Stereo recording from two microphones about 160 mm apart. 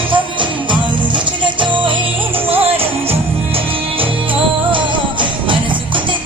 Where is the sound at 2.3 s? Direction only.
10° right (ahead or behind).